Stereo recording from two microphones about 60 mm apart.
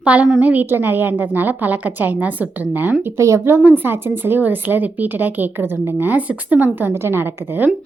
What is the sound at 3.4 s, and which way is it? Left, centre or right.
Speech, right.